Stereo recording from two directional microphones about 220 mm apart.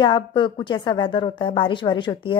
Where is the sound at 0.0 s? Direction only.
20° left (ahead or behind).